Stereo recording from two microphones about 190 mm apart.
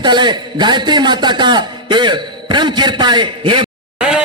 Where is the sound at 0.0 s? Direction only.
25° right (ahead or behind).